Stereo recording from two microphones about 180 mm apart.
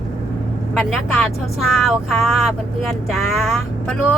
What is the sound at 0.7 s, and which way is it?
Speech, centre (ahead or behind).